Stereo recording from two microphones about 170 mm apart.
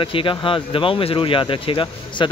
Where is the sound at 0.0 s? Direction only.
30° left (ahead or behind).